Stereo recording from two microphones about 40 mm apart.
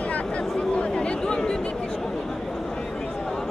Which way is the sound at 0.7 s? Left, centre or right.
Left.